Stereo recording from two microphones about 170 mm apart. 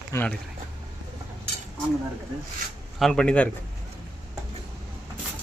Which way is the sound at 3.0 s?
5° left (ahead or behind).